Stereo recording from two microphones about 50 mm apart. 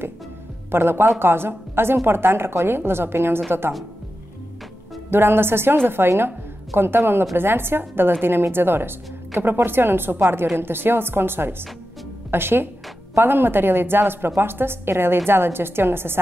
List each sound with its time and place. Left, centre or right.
0.7 s a woman's voice: right
5.1 s a woman's voice: right